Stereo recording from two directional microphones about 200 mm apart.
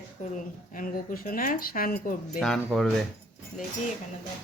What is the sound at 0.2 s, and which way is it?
Speech, 35° left (ahead or behind).